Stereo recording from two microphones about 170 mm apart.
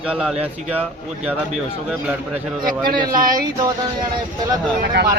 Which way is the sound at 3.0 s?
55° right (ahead or behind).